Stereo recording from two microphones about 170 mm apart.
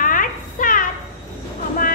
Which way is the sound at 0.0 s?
55° left (ahead or behind).